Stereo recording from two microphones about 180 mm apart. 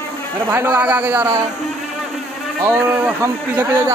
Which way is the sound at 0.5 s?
10° right (ahead or behind).